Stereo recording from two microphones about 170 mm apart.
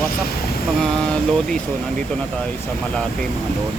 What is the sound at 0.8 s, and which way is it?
Vehicle, 5° left (ahead or behind).